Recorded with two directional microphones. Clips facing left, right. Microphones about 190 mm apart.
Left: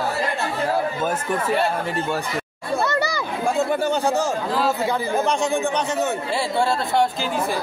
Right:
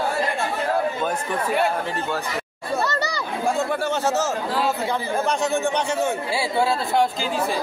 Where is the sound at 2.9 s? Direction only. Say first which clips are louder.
Left 3 dB; 10° left (ahead or behind).